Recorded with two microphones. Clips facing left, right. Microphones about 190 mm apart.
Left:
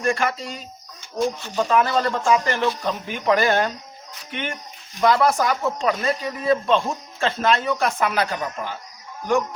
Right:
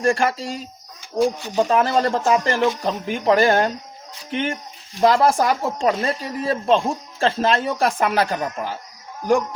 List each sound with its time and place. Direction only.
0.0 s speech: 30° right (ahead or behind)
1.2 s speech: 15° right (ahead or behind)
1.6 s speech: 35° right (ahead or behind)